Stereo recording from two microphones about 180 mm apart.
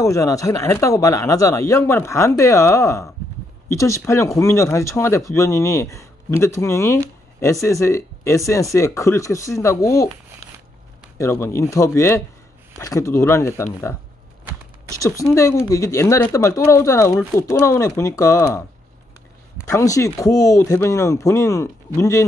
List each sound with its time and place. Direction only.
0.0 s speech: 15° left (ahead or behind)
11.1 s speech: 15° left (ahead or behind)
15.0 s speech: 15° left (ahead or behind)
19.6 s speech: 20° left (ahead or behind)